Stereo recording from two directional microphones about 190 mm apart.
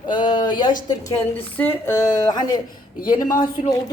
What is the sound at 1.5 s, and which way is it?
A woman's voice, 10° left (ahead or behind).